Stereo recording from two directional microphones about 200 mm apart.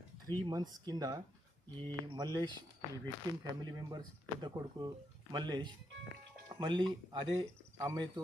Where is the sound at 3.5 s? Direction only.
20° right (ahead or behind).